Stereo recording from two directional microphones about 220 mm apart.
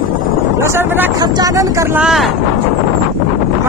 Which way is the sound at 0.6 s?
10° right (ahead or behind).